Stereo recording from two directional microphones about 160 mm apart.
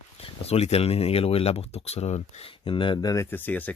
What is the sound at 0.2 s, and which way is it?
Speech, 40° left (ahead or behind).